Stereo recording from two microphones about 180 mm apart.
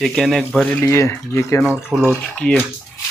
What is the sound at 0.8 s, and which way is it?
Speech, 15° left (ahead or behind).